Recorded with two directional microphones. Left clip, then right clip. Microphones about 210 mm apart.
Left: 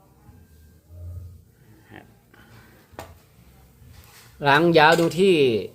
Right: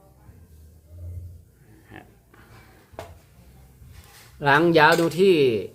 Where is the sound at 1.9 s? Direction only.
Centre (ahead or behind).